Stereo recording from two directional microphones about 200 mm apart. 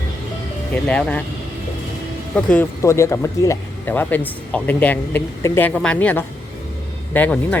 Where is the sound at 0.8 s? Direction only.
5° left (ahead or behind).